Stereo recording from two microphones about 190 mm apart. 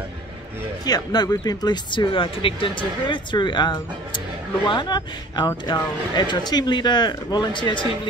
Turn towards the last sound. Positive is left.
turn(degrees=25)  # may be behind; listen again after turning